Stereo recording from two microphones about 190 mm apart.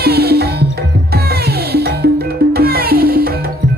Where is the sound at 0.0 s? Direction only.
55° right (ahead or behind).